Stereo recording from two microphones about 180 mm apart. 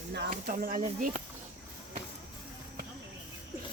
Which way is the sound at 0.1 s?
65° right (ahead or behind).